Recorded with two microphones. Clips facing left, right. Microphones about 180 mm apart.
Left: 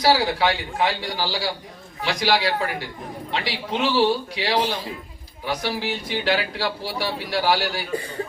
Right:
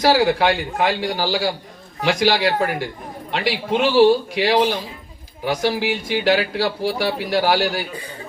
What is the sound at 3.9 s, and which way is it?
Speech, 50° right (ahead or behind).